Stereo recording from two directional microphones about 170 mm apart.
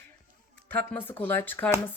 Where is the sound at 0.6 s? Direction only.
10° left (ahead or behind).